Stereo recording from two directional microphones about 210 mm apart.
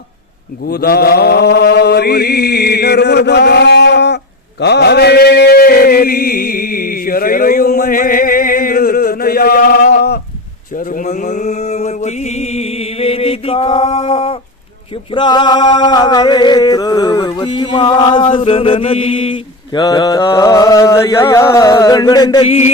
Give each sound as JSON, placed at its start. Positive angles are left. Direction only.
{"t": 0.7, "sound": "mantra", "side_deg": 50}
{"t": 4.6, "sound": "chant", "side_deg": 50}
{"t": 15.1, "sound": "a sound", "side_deg": 20}
{"t": 19.7, "sound": "mantra", "side_deg": 20}